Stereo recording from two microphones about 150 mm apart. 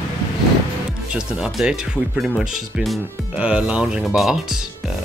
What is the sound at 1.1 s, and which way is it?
Speech, 5° right (ahead or behind).